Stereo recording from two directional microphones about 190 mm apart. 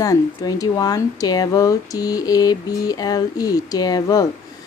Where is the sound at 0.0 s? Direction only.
20° left (ahead or behind).